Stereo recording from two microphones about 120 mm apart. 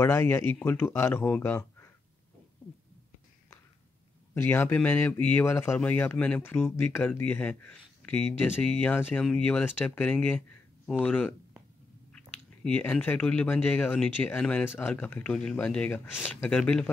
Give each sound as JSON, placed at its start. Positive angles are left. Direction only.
{"t": 0.0, "sound": "speech", "side_deg": 20}
{"t": 4.3, "sound": "speech", "side_deg": 20}
{"t": 12.6, "sound": "speech", "side_deg": 10}